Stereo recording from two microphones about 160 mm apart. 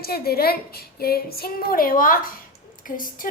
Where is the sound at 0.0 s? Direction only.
70° left (ahead or behind).